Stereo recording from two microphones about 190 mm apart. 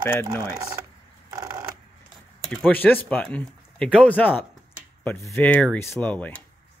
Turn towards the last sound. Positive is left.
turn(degrees=5)  # may be behind; listen again after turning